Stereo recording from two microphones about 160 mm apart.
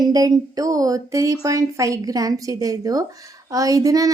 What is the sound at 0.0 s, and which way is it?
A child's voice, 25° right (ahead or behind).